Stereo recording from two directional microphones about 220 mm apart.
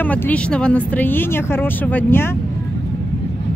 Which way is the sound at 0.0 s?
5° left (ahead or behind).